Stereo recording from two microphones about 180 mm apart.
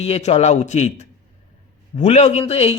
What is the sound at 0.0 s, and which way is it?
A man's voice, 35° left (ahead or behind).